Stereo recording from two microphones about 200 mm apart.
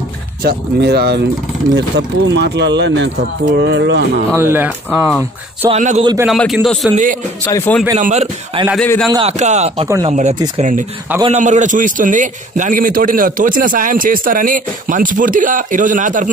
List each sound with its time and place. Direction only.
0.4 s speech: 50° right (ahead or behind)
4.4 s speech: 10° right (ahead or behind)
5.7 s a man's voice: 35° right (ahead or behind)
6.2 s a man's voice: centre (ahead or behind)
7.4 s a man's voice: 10° left (ahead or behind)
8.0 s a man's voice: 35° right (ahead or behind)
8.7 s a man's voice: 5° left (ahead or behind)
9.4 s a man's voice: 35° right (ahead or behind)